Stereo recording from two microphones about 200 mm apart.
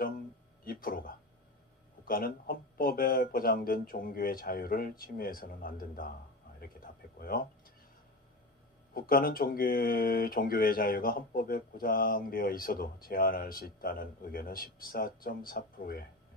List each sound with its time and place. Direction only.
0.7 s a sound: 45° left (ahead or behind)
2.0 s speech: 45° left (ahead or behind)
7.2 s speech: 50° left (ahead or behind)
8.9 s speech: 45° left (ahead or behind)